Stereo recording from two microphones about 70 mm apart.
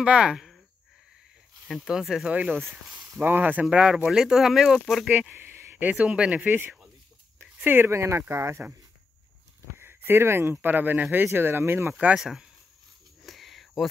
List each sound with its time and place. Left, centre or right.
0.0 s speech: centre
1.9 s speech: centre
2.3 s speech: right
3.6 s speech: centre
5.3 s speech: right
7.3 s a sound: right
7.9 s speech: right
9.8 s speech: right
12.2 s speech: centre
13.2 s a sound: centre